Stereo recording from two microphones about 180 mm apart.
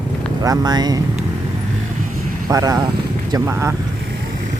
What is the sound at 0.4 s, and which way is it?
Speech, 20° right (ahead or behind).